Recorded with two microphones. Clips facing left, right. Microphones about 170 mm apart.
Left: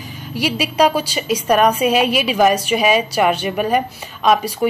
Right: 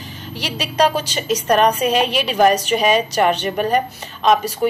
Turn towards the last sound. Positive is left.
turn(degrees=10)  # may be behind; listen again after turning